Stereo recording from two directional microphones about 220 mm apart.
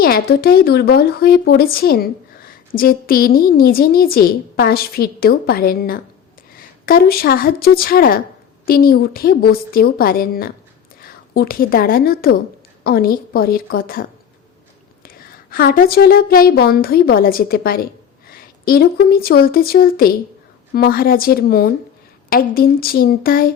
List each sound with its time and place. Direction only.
0.0 s a woman's voice: 45° left (ahead or behind)